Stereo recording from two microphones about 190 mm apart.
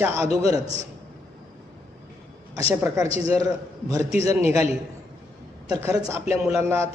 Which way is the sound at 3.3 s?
20° right (ahead or behind).